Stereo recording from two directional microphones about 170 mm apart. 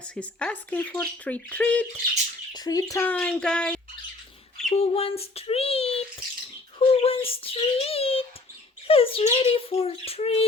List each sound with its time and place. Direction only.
0.1 s speech: 5° left (ahead or behind)
2.5 s speech: 20° left (ahead or behind)
3.1 s bird: 5° left (ahead or behind)
4.7 s a child's voice: 35° left (ahead or behind)